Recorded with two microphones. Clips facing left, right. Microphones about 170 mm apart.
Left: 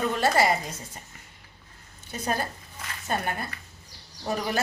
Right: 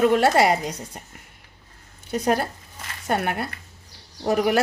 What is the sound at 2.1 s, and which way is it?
A woman's voice, 70° right (ahead or behind).